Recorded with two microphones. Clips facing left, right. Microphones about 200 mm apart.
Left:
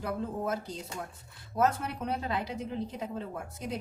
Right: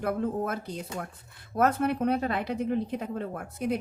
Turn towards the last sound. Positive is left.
turn(degrees=-60)  # may be behind; listen again after turning